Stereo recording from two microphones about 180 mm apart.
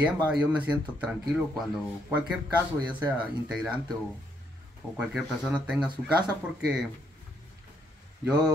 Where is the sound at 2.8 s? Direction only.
5° right (ahead or behind).